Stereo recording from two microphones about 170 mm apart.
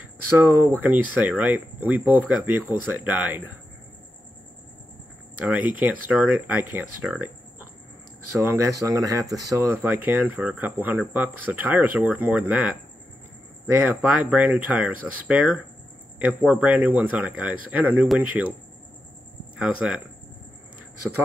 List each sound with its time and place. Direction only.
0.4 s speech: 15° right (ahead or behind)
5.4 s speech: 10° right (ahead or behind)
13.7 s speech: 10° right (ahead or behind)
19.5 s speech: 5° right (ahead or behind)